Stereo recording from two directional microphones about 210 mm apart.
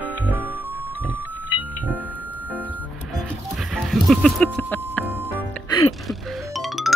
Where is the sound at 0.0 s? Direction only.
10° right (ahead or behind).